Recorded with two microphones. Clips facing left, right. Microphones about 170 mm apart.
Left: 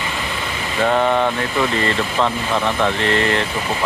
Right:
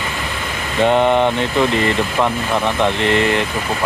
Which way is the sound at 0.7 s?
20° right (ahead or behind).